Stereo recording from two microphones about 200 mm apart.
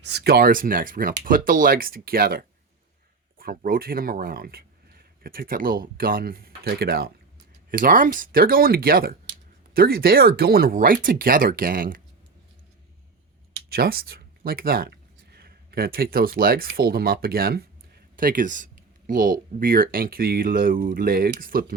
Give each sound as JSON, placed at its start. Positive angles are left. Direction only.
{"t": 0.0, "sound": "speech", "side_deg": -55}
{"t": 13.7, "sound": "speech", "side_deg": -50}